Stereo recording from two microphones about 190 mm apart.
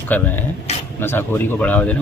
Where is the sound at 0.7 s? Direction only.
35° left (ahead or behind).